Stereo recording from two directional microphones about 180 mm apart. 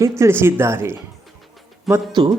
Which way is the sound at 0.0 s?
15° right (ahead or behind).